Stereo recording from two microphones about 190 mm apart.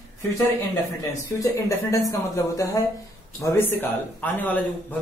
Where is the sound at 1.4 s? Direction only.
15° left (ahead or behind).